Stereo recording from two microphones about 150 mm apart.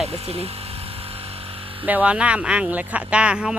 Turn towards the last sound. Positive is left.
turn(degrees=-5)  # may be behind; listen again after turning